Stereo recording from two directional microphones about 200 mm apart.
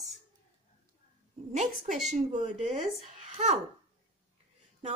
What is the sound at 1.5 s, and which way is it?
A woman's voice, 35° right (ahead or behind).